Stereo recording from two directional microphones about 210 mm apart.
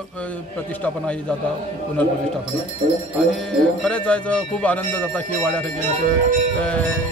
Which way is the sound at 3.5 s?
5° left (ahead or behind).